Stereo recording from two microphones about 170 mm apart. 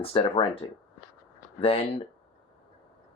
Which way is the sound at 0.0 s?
30° left (ahead or behind).